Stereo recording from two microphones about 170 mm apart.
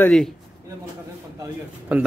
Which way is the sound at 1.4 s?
10° right (ahead or behind).